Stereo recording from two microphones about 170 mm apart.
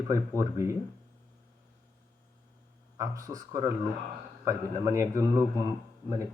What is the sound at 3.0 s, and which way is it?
A man's voice, 20° right (ahead or behind).